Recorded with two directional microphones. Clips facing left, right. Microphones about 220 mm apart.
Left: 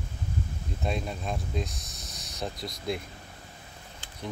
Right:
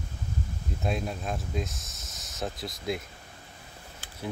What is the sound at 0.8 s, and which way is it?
Speech, centre (ahead or behind).